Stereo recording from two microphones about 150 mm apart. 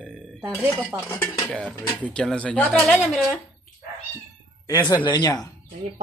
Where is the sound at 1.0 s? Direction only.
15° left (ahead or behind).